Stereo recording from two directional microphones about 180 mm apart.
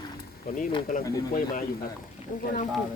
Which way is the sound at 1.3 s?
50° left (ahead or behind).